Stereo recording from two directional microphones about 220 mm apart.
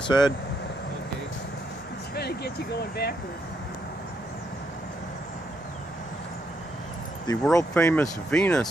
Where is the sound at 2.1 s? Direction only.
45° left (ahead or behind).